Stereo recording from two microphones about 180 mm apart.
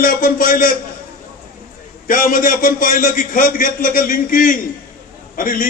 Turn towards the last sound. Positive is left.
turn(degrees=50)  # may be behind; listen again after turning